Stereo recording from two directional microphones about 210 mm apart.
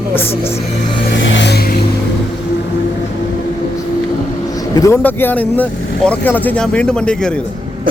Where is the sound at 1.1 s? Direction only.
60° left (ahead or behind).